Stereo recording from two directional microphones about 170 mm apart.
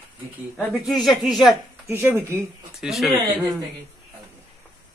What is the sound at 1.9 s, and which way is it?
Speech, 10° right (ahead or behind).